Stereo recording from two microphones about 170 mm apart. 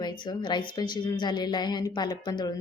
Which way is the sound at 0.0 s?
25° left (ahead or behind).